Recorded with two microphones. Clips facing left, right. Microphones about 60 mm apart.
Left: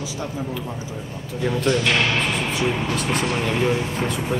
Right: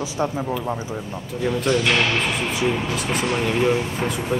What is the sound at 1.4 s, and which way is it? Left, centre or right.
Speech, centre.